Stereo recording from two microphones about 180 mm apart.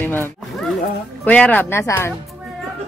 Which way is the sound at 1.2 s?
10° left (ahead or behind).